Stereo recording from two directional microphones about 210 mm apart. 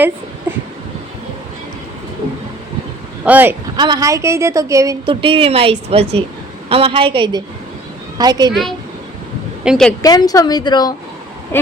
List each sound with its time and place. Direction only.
3.2 s speech: 10° right (ahead or behind)
3.8 s a woman's voice: 20° right (ahead or behind)
9.6 s a woman's voice: centre (ahead or behind)
10.0 s speech: 20° left (ahead or behind)
11.5 s a sound: 10° left (ahead or behind)